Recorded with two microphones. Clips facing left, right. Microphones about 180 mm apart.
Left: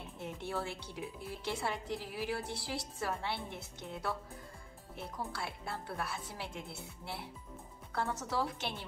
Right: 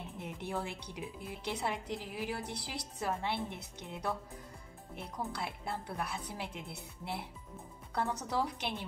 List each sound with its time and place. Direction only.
0.2 s speech: 20° right (ahead or behind)